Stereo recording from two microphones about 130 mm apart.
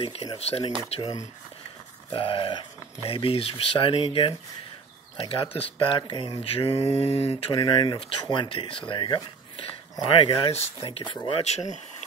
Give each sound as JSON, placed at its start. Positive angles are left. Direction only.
{"t": 0.0, "sound": "speech", "side_deg": 50}
{"t": 2.1, "sound": "speech", "side_deg": 40}
{"t": 11.2, "sound": "speech", "side_deg": 55}